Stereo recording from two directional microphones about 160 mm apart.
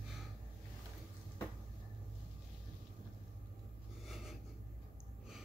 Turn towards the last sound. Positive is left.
turn(degrees=0)  # may be behind; listen again after turning